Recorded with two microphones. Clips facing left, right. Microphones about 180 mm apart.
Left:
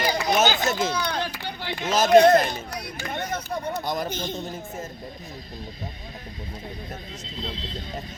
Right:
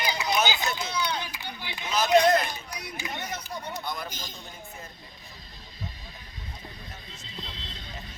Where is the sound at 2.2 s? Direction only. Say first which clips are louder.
Left 7 dB; 55° left (ahead or behind).